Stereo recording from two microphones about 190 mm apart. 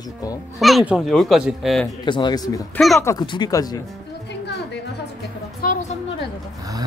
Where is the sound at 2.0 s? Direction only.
25° left (ahead or behind).